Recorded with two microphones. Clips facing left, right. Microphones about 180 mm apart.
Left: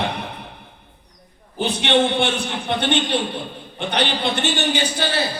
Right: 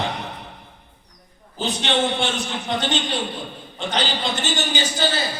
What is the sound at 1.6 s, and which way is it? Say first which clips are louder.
A man's voice: left 4 dB; 60° left (ahead or behind).